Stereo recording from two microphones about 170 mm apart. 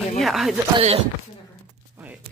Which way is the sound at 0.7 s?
30° right (ahead or behind).